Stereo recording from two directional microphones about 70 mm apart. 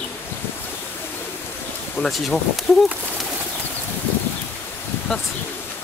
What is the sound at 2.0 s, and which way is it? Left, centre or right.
Speech, left.